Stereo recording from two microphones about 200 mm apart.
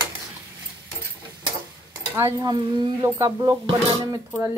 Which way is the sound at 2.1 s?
15° right (ahead or behind).